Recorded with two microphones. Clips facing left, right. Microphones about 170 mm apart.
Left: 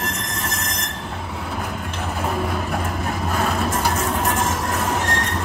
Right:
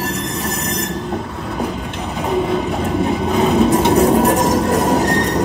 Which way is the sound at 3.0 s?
Centre (ahead or behind).